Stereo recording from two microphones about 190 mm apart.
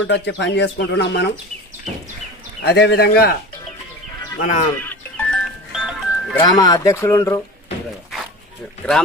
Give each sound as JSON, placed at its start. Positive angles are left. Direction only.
{"t": 0.1, "sound": "speech", "side_deg": 65}
{"t": 2.6, "sound": "speech", "side_deg": 60}
{"t": 4.4, "sound": "speech", "side_deg": 40}
{"t": 4.9, "sound": "music", "side_deg": 5}
{"t": 6.4, "sound": "speech", "side_deg": 20}
{"t": 8.8, "sound": "speech", "side_deg": 5}